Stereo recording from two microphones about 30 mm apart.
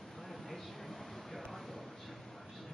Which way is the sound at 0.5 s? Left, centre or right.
Centre.